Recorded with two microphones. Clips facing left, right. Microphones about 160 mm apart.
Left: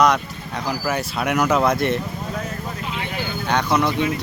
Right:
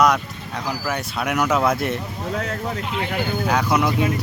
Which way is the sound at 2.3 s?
70° right (ahead or behind).